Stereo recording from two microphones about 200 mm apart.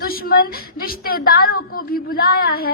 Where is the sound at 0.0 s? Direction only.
50° left (ahead or behind).